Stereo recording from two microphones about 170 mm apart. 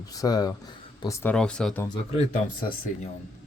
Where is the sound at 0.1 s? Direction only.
20° left (ahead or behind).